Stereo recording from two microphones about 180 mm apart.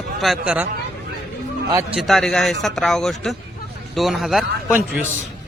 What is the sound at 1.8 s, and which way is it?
A man's voice, centre (ahead or behind).